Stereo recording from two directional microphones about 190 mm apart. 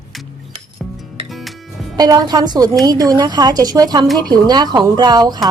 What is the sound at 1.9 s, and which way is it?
Speech, 20° right (ahead or behind).